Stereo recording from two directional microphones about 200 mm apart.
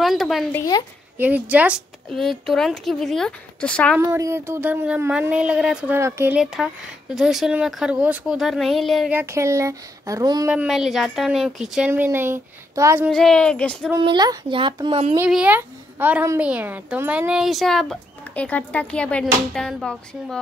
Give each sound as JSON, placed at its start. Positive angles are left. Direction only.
{"t": 0.0, "sound": "a woman's voice", "side_deg": 0}
{"t": 4.0, "sound": "a woman's voice", "side_deg": -15}
{"t": 9.2, "sound": "speech", "side_deg": -15}
{"t": 10.5, "sound": "a woman's voice", "side_deg": -5}
{"t": 13.1, "sound": "a woman's voice", "side_deg": 0}
{"t": 14.0, "sound": "speech", "side_deg": -25}
{"t": 15.1, "sound": "a woman's voice", "side_deg": -5}